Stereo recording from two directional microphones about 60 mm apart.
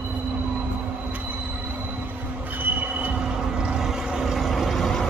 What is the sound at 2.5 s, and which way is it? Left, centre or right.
Train, right.